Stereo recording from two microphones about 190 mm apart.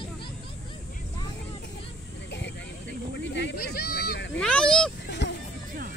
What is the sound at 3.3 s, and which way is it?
Speech, 65° left (ahead or behind).